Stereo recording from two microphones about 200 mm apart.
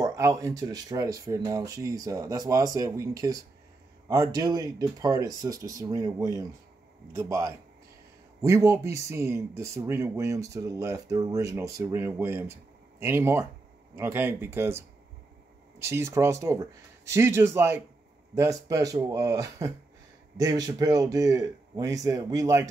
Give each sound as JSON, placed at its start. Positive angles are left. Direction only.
{"t": 0.0, "sound": "speech", "side_deg": -15}